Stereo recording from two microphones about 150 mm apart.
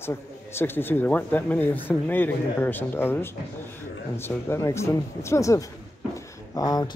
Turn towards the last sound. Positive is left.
turn(degrees=25)  # may be behind; listen again after turning